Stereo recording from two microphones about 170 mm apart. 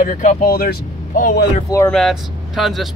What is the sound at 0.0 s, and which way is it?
Speech, 45° left (ahead or behind).